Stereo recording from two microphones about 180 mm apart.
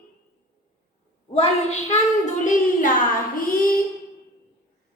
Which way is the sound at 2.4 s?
45° left (ahead or behind).